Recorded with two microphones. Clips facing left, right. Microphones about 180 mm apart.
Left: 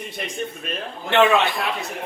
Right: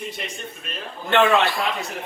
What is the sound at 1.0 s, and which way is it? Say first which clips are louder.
Speech: left 1 dB; 20° left (ahead or behind).